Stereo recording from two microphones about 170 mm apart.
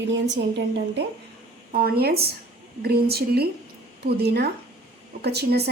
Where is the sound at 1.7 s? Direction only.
60° right (ahead or behind).